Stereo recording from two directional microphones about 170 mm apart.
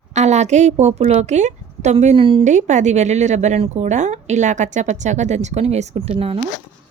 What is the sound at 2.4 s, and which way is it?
Speech, 45° right (ahead or behind).